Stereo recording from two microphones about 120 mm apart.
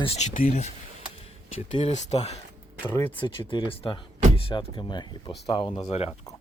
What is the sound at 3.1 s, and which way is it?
Speech, 45° left (ahead or behind).